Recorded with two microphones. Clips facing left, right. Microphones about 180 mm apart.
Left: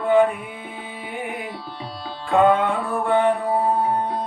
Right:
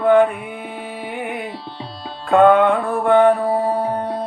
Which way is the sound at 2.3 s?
60° right (ahead or behind).